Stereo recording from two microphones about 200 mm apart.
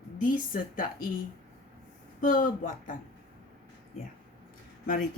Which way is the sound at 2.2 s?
40° left (ahead or behind).